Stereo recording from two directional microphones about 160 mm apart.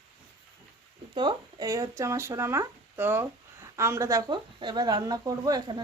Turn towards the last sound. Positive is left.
turn(degrees=-25)  # may be behind; listen again after turning